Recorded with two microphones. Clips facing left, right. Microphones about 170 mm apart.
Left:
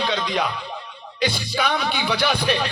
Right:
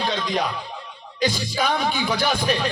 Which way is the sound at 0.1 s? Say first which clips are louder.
Left 1 dB; 45° right (ahead or behind).